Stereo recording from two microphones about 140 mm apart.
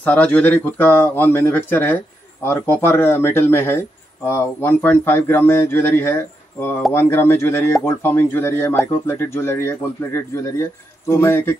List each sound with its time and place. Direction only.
0.0 s speech: 10° left (ahead or behind)